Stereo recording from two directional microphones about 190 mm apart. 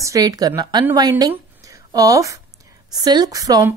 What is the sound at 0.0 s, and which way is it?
A woman's voice, 20° right (ahead or behind).